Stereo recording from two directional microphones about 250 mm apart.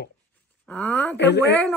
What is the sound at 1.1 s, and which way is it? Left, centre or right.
Speech, left.